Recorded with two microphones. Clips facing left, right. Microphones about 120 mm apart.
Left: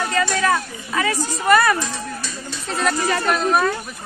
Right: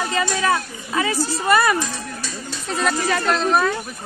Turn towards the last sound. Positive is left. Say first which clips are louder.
# even
turn(degrees=5)  # may be behind; listen again after turning